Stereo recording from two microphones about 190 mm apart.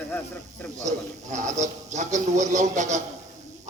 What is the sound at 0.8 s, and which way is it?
A man's voice, 40° right (ahead or behind).